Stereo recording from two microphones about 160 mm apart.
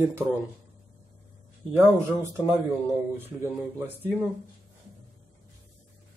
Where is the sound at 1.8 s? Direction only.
15° right (ahead or behind).